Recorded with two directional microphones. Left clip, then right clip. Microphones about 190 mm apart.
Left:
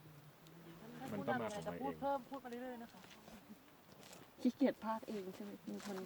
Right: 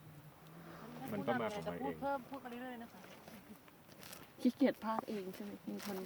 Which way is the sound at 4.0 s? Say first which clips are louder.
Right 3 dB; centre (ahead or behind).